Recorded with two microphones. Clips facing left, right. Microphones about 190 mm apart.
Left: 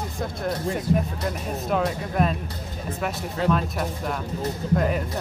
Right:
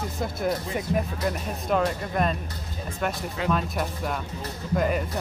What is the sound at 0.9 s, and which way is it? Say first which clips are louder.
Speech: even; centre (ahead or behind).